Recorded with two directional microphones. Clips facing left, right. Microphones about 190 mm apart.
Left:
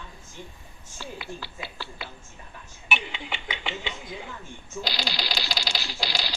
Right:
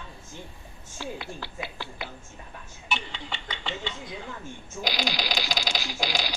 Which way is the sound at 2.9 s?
10° left (ahead or behind).